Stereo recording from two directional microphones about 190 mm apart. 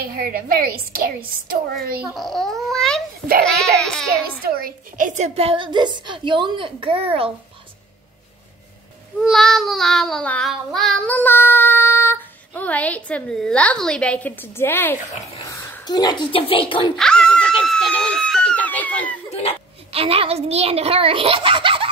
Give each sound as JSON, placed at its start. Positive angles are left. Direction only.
{"t": 0.0, "sound": "a woman's voice", "side_deg": -50}
{"t": 2.1, "sound": "a child's voice", "side_deg": 0}
{"t": 4.5, "sound": "a woman's voice", "side_deg": -50}
{"t": 9.2, "sound": "child singing", "side_deg": 0}
{"t": 15.5, "sound": "speech", "side_deg": 20}
{"t": 16.9, "sound": "screaming", "side_deg": 5}
{"t": 19.9, "sound": "a child's voice", "side_deg": -30}